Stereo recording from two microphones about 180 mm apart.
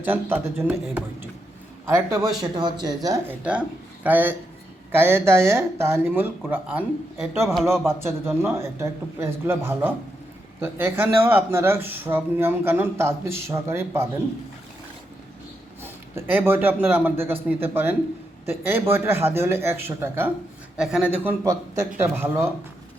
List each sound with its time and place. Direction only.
0.0 s speech: 10° right (ahead or behind)
15.8 s a man's voice: 10° right (ahead or behind)